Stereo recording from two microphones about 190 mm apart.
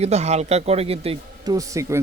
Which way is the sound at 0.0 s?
35° right (ahead or behind).